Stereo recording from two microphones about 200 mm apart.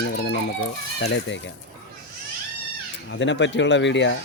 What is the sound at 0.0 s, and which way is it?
Chicken, 60° left (ahead or behind).